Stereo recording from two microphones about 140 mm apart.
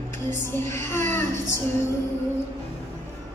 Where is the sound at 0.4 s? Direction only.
20° left (ahead or behind).